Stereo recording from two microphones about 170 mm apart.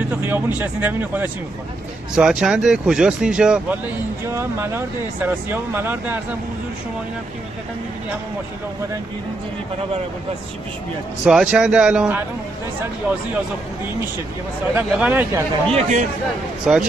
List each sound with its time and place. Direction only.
0.1 s speech: 10° right (ahead or behind)
11.2 s speech: 5° right (ahead or behind)
14.8 s speech: 10° right (ahead or behind)
15.7 s speech: 45° right (ahead or behind)
16.7 s speech: 5° right (ahead or behind)